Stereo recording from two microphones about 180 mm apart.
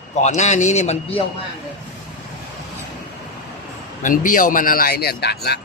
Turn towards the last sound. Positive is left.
turn(degrees=65)  # may be behind; listen again after turning